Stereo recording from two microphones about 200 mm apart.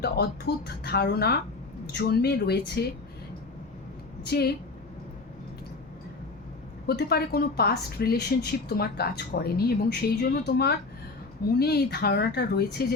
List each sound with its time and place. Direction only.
0.0 s a woman's voice: 55° left (ahead or behind)
4.3 s a woman's voice: 55° left (ahead or behind)
6.8 s a woman's voice: 50° left (ahead or behind)